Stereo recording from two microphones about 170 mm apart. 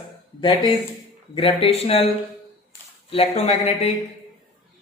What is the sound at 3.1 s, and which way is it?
Speech, 35° left (ahead or behind).